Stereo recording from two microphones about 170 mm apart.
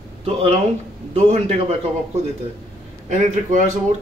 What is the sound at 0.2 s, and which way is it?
Speech, 35° right (ahead or behind).